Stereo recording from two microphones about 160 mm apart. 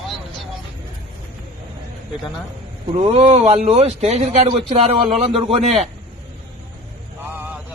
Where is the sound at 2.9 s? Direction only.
40° right (ahead or behind).